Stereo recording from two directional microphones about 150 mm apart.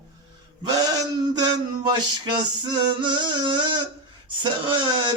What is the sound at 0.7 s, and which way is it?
Male singing, 25° right (ahead or behind).